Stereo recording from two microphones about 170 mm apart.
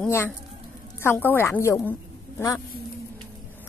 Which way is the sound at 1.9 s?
15° left (ahead or behind).